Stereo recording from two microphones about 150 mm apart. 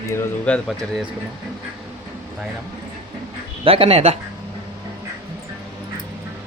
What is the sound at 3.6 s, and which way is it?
Speech, 40° right (ahead or behind).